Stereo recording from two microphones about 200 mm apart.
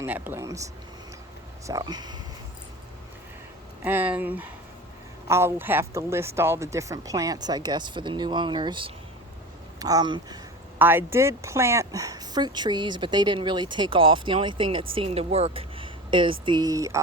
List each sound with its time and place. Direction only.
0.0 s speech: 10° right (ahead or behind)
3.8 s speech: 10° right (ahead or behind)